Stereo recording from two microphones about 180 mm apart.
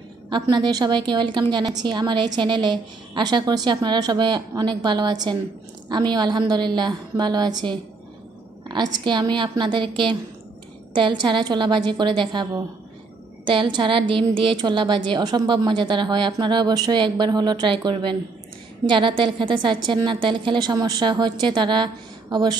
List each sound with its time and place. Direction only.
0.3 s a woman's voice: 25° right (ahead or behind)